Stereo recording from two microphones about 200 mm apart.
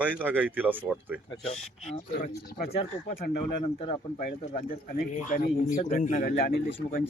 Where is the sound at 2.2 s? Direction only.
50° left (ahead or behind).